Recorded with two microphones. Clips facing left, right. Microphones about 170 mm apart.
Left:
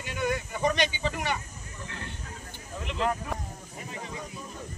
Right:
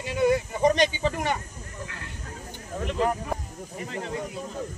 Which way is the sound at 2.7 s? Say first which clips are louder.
Right 7 dB; 40° right (ahead or behind).